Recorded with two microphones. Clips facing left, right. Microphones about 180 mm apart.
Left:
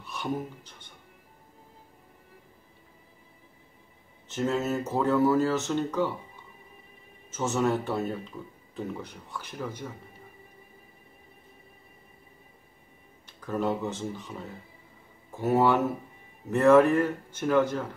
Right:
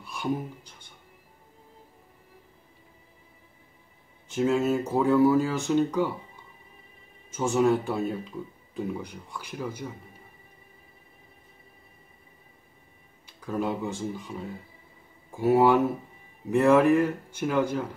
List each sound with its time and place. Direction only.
0.0 s a sound: 10° right (ahead or behind)
4.3 s speech: 10° right (ahead or behind)
7.2 s speech: 10° right (ahead or behind)
13.5 s speech: 10° right (ahead or behind)
15.3 s speech: 10° right (ahead or behind)